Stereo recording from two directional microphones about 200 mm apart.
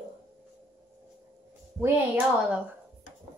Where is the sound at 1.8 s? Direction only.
10° right (ahead or behind).